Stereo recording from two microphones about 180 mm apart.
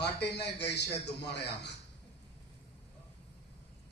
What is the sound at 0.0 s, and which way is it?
A man's voice, 70° left (ahead or behind).